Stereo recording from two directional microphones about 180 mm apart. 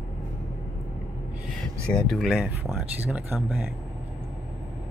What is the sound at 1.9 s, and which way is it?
Speech, centre (ahead or behind).